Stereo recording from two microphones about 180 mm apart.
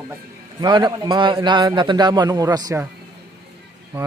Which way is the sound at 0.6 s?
25° right (ahead or behind).